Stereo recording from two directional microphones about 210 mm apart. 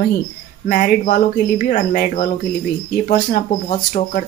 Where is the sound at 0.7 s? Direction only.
40° left (ahead or behind).